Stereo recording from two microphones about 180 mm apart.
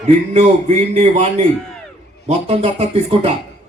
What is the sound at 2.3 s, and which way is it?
Speech, 35° right (ahead or behind).